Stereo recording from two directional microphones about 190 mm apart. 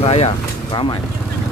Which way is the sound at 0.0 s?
35° left (ahead or behind).